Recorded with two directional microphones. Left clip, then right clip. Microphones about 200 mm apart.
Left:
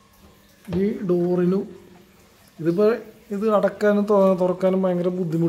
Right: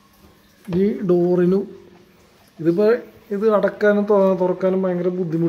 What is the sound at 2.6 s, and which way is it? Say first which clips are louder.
Speech: right 3 dB; centre (ahead or behind).